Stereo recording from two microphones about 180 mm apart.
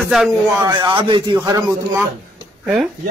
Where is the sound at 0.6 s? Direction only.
25° right (ahead or behind).